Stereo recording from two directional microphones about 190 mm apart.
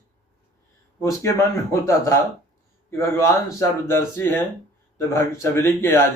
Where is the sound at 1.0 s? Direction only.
15° left (ahead or behind).